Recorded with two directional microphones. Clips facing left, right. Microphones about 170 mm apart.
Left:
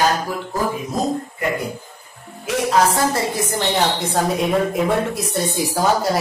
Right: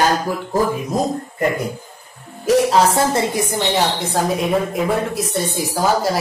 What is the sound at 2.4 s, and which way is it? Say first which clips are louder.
Music: right 4 dB; 25° right (ahead or behind).